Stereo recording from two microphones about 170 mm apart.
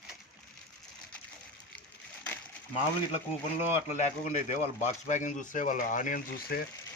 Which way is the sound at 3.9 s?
45° left (ahead or behind).